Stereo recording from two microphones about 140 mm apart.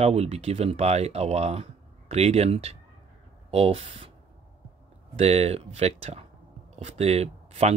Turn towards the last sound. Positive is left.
turn(degrees=-50)  # may be behind; listen again after turning